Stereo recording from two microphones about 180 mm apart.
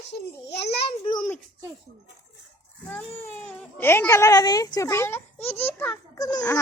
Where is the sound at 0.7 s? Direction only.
30° left (ahead or behind).